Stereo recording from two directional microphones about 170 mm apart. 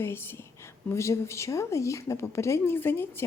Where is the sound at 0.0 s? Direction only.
15° left (ahead or behind).